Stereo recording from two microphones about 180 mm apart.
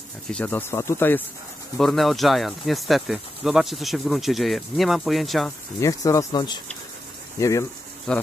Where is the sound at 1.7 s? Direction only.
Centre (ahead or behind).